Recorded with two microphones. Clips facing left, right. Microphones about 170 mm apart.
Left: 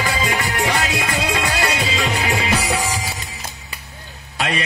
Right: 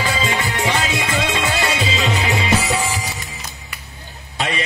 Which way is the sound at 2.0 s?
20° right (ahead or behind).